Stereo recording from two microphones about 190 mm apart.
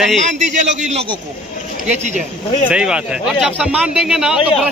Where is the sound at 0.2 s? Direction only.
40° right (ahead or behind).